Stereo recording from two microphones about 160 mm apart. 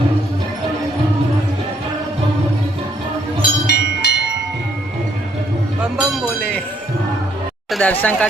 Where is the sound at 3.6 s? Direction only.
90° left.